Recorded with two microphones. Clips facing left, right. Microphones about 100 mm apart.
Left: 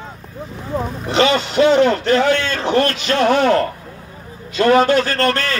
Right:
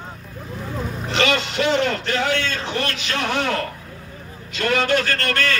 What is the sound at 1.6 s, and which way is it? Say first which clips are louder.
A man's voice: left 8 dB; 50° left (ahead or behind).